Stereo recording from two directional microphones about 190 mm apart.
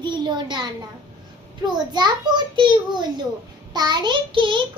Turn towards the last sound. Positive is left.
turn(degrees=-25)  # may be behind; listen again after turning